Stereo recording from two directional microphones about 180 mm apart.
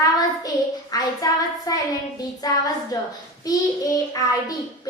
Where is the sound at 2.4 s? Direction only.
20° left (ahead or behind).